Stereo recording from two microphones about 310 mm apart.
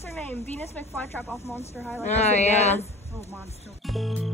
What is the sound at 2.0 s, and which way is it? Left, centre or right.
Speech, left.